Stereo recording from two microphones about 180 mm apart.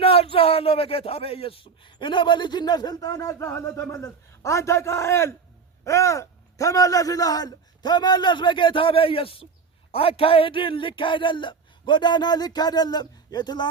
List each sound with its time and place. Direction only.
0.0 s a man's voice: 30° left (ahead or behind)